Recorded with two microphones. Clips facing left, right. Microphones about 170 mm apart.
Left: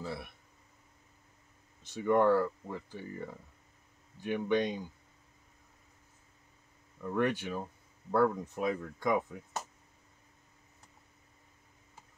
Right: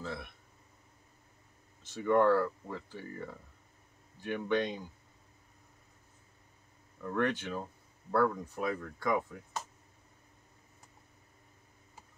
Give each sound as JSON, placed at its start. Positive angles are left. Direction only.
{"t": 0.0, "sound": "speech", "side_deg": 10}
{"t": 1.8, "sound": "speech", "side_deg": 15}
{"t": 7.0, "sound": "speech", "side_deg": 10}